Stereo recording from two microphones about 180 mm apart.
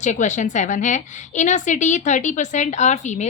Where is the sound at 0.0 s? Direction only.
40° left (ahead or behind).